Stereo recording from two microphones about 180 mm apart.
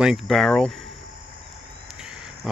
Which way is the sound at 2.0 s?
5° right (ahead or behind).